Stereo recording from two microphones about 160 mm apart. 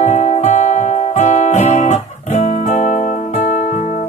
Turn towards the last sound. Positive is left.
turn(degrees=45)  # may be behind; listen again after turning